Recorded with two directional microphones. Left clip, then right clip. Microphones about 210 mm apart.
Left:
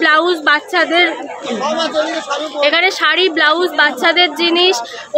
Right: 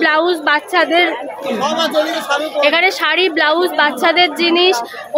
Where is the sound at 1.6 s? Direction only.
45° right (ahead or behind).